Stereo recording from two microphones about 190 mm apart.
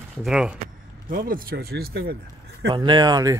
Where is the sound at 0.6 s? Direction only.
45° right (ahead or behind).